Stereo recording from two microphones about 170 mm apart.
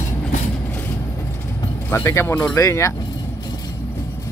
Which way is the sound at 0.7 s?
10° left (ahead or behind).